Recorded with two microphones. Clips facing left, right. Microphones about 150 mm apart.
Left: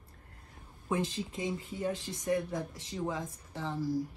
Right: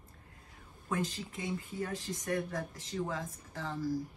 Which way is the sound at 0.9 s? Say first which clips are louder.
Left 3 dB; 20° left (ahead or behind).